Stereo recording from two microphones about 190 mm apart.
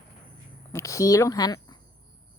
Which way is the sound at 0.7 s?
15° left (ahead or behind).